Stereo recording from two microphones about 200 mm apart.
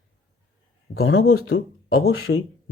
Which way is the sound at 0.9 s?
90° left.